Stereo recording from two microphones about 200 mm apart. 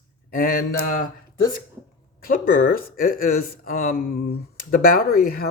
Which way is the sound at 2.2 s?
45° left (ahead or behind).